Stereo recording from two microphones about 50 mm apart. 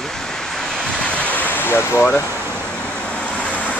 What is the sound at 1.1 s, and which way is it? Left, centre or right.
Waves, left.